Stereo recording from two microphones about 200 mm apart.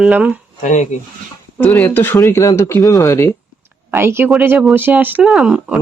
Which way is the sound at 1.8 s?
10° left (ahead or behind).